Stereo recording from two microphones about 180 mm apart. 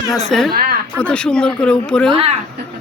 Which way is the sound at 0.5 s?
55° right (ahead or behind).